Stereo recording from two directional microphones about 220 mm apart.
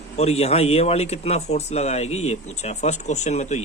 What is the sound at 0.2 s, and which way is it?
A man's voice, 30° left (ahead or behind).